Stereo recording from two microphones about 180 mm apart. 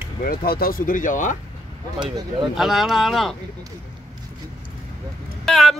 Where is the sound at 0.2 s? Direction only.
55° left (ahead or behind).